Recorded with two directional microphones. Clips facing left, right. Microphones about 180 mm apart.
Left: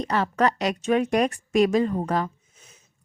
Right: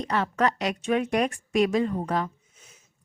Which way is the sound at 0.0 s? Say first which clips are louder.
Left 2 dB; 40° left (ahead or behind).